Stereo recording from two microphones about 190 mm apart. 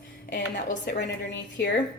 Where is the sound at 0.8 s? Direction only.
65° left (ahead or behind).